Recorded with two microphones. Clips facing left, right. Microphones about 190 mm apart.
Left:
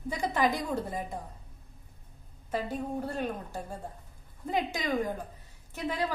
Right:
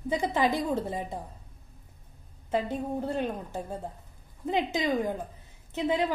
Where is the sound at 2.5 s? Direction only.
25° right (ahead or behind).